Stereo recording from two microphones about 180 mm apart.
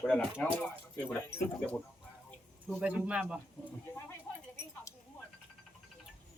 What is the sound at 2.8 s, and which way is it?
Speech, 5° right (ahead or behind).